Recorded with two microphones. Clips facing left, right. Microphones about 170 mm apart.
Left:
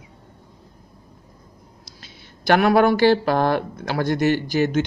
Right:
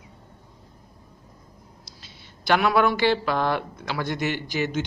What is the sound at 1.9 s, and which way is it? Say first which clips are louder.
Speech: left 3 dB; 50° left (ahead or behind).